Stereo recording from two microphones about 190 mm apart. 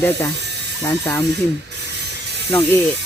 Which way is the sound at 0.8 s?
10° left (ahead or behind).